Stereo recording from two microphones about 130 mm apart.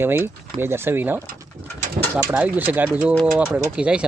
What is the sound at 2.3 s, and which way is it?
Speech, 10° right (ahead or behind).